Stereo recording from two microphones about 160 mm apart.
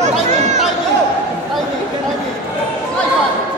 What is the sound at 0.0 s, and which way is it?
Chatter, 45° right (ahead or behind).